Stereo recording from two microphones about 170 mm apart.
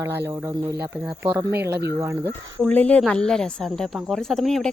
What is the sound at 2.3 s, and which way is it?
Speech, 10° left (ahead or behind).